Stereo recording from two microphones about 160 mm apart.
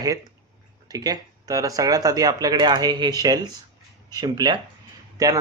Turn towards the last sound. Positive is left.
turn(degrees=-20)  # may be behind; listen again after turning